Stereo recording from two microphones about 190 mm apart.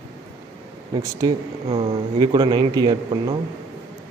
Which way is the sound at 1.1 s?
25° right (ahead or behind).